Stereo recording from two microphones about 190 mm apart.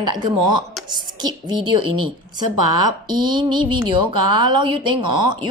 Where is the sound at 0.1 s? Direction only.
25° right (ahead or behind).